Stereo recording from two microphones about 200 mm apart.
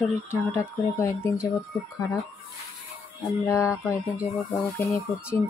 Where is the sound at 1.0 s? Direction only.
15° left (ahead or behind).